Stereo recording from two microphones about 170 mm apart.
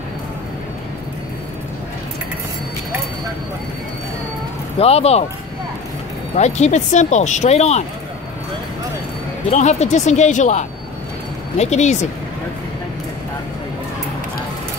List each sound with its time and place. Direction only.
4.7 s speech: 35° left (ahead or behind)
6.3 s speech: 40° left (ahead or behind)
9.5 s speech: 45° left (ahead or behind)